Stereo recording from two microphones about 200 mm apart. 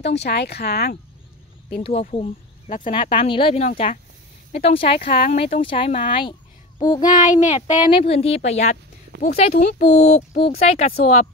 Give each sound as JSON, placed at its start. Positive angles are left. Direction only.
{"t": 0.0, "sound": "speech", "side_deg": 60}
{"t": 1.8, "sound": "speech", "side_deg": 35}
{"t": 7.2, "sound": "speech", "side_deg": 35}
{"t": 9.1, "sound": "speech", "side_deg": -60}
{"t": 9.6, "sound": "speech", "side_deg": 35}